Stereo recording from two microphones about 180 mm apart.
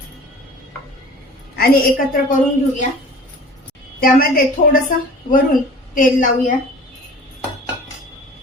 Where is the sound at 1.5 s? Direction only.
55° left (ahead or behind).